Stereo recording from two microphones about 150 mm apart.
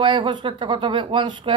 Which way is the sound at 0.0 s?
30° right (ahead or behind).